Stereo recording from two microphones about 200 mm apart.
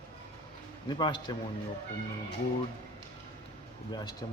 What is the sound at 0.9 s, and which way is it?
Speech, 20° left (ahead or behind).